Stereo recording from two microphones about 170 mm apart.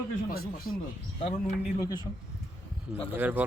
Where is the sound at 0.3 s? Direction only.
60° left (ahead or behind).